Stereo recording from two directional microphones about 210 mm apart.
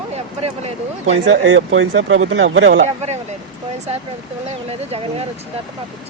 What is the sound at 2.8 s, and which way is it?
Speech, 30° right (ahead or behind).